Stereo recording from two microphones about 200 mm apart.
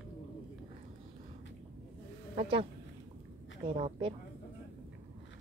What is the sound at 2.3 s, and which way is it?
A woman's voice, 25° right (ahead or behind).